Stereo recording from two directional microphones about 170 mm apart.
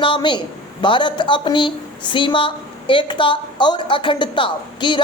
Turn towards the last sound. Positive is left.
turn(degrees=30)  # may be behind; listen again after turning